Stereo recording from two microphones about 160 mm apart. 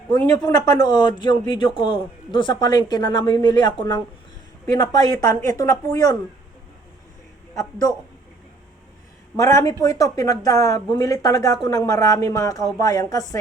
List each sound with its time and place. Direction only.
0.1 s a man's voice: 25° left (ahead or behind)
7.5 s a man's voice: 20° left (ahead or behind)
9.3 s a man's voice: 20° left (ahead or behind)